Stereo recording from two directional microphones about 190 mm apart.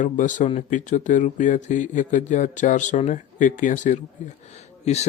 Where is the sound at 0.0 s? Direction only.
40° left (ahead or behind).